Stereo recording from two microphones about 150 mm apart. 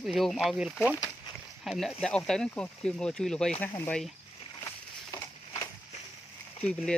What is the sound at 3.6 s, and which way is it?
Speech, 15° left (ahead or behind).